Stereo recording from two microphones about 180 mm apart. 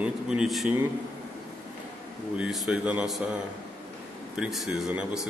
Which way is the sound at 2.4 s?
5° right (ahead or behind).